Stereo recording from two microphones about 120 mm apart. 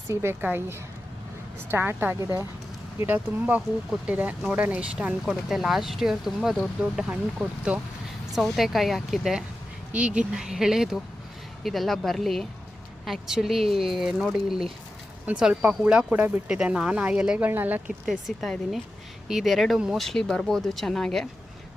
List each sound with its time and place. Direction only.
0.1 s a woman's voice: 20° right (ahead or behind)
3.0 s speech: 15° right (ahead or behind)
18.0 s speech: 5° right (ahead or behind)